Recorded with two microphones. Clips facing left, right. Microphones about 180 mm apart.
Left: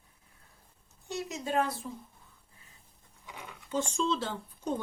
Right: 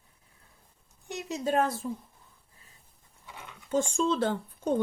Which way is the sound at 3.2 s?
15° left (ahead or behind).